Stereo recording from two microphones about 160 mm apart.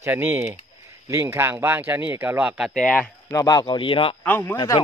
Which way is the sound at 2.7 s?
5° left (ahead or behind).